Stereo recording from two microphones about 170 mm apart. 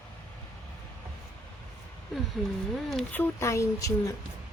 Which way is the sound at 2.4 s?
Centre (ahead or behind).